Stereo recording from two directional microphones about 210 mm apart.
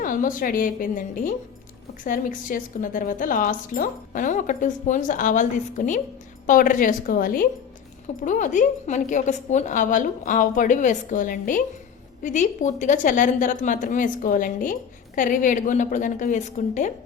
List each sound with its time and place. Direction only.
0.0 s a woman's voice: 40° left (ahead or behind)